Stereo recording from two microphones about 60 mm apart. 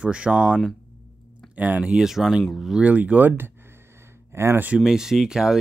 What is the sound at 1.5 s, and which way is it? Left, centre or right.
Speech, right.